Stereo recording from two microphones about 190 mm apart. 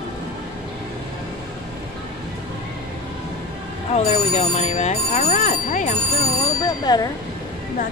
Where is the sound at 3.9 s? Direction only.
35° left (ahead or behind).